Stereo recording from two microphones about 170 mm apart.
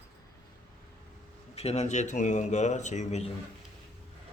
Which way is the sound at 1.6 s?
40° left (ahead or behind).